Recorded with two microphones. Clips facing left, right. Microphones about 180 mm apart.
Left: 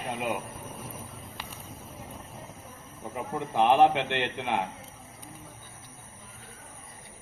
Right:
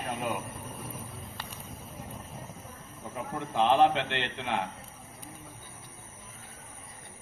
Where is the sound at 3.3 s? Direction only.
20° left (ahead or behind).